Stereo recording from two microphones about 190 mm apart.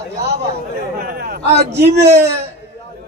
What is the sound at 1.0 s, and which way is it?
A man's voice, 55° right (ahead or behind).